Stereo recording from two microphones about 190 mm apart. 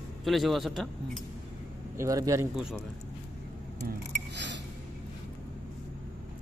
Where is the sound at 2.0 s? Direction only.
15° right (ahead or behind).